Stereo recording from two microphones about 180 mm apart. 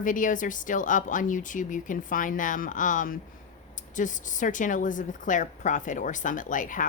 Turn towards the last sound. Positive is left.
turn(degrees=45)  # may be behind; listen again after turning